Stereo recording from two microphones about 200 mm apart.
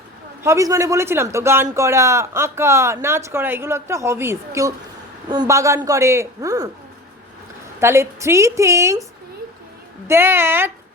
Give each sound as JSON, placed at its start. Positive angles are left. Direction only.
{"t": 0.4, "sound": "speech", "side_deg": -15}
{"t": 7.8, "sound": "speech", "side_deg": -15}
{"t": 10.1, "sound": "speech", "side_deg": -10}